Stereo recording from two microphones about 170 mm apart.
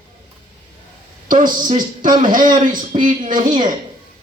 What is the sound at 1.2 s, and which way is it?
A man's voice, 50° right (ahead or behind).